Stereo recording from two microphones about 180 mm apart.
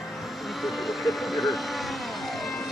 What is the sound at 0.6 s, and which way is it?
Speech, centre (ahead or behind).